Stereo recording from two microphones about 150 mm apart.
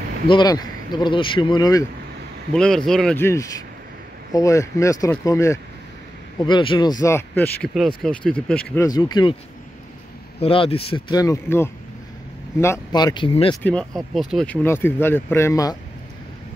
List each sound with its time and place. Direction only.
0.3 s speech: 25° left (ahead or behind)
2.5 s speech: 5° left (ahead or behind)
3.2 s speech: 20° left (ahead or behind)
6.4 s speech: 30° left (ahead or behind); by 7.7 s 10° left (ahead or behind)
7.7 s speech: centre (ahead or behind)
8.8 s speech: 25° left (ahead or behind)
10.4 s speech: 40° left (ahead or behind)
11.1 s speech: 20° left (ahead or behind); by 13.6 s 35° left (ahead or behind)
13.6 s speech: 10° left (ahead or behind)
14.1 s speech: centre (ahead or behind); by 15.8 s 25° left (ahead or behind)